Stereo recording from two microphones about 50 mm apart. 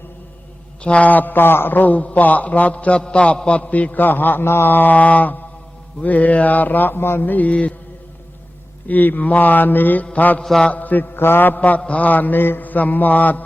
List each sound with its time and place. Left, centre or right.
0.8 s a man's voice: left
8.9 s a man's voice: left
10.4 s mantra: centre
10.7 s a man's voice: left